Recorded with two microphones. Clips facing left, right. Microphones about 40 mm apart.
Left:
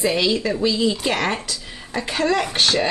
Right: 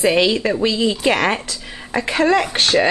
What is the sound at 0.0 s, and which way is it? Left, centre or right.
A woman's voice, right.